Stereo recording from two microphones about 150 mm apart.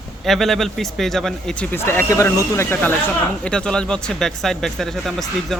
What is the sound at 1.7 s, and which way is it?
Speech, 15° left (ahead or behind).